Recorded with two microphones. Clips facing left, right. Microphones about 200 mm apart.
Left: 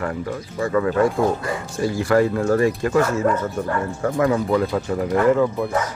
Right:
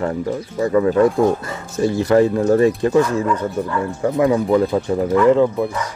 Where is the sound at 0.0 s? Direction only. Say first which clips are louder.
Right 5 dB; 25° right (ahead or behind).